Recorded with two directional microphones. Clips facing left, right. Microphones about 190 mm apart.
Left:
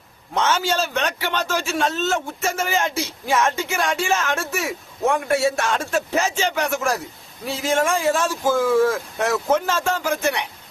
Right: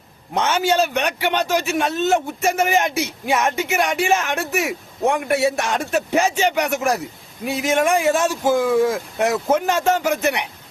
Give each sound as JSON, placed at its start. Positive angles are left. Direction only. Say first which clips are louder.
{"t": 0.3, "sound": "speech", "louder": "right 3 dB", "side_deg": -15}